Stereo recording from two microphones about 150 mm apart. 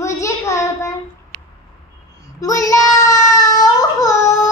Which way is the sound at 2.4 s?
20° left (ahead or behind).